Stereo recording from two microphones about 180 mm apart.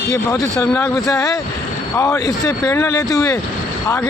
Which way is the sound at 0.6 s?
15° left (ahead or behind).